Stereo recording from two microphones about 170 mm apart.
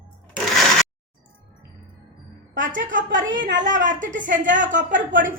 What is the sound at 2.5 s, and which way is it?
A woman's voice, 50° right (ahead or behind).